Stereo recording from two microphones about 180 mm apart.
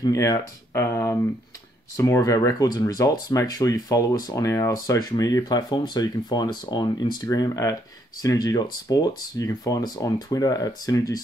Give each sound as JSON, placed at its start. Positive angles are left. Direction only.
{"t": 0.0, "sound": "speech", "side_deg": 20}